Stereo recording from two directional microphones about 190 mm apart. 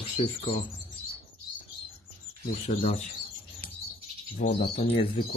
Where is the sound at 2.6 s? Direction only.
35° left (ahead or behind).